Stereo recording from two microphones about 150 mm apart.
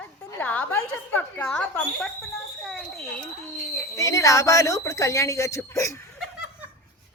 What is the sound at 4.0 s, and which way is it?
Speech, 20° left (ahead or behind).